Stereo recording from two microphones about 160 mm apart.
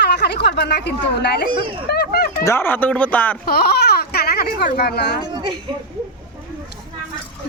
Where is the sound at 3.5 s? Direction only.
75° left (ahead or behind).